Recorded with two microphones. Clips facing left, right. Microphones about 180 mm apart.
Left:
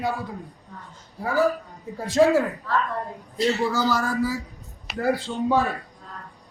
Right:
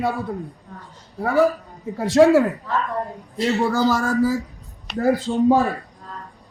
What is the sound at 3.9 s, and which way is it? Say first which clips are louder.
Speech: right 5 dB; 45° right (ahead or behind).